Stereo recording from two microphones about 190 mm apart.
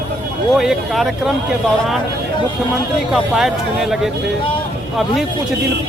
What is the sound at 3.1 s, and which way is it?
Speech, centre (ahead or behind).